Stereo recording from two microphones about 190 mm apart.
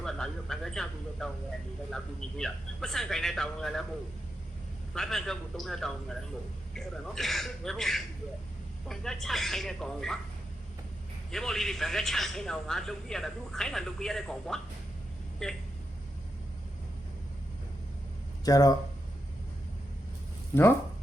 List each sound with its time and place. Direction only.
0.0 s a man's voice: centre (ahead or behind)
2.4 s a man's voice: centre (ahead or behind)
4.9 s a man's voice: centre (ahead or behind)
11.3 s a man's voice: centre (ahead or behind)
18.4 s speech: 20° left (ahead or behind)